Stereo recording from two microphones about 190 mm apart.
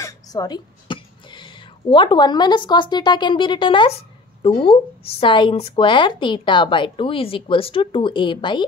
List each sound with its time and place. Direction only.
0.0 s speech: 20° left (ahead or behind)